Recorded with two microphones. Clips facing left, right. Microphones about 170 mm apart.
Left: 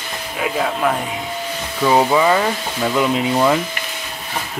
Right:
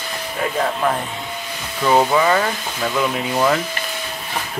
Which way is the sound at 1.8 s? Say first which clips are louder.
Left 1 dB; 10° left (ahead or behind).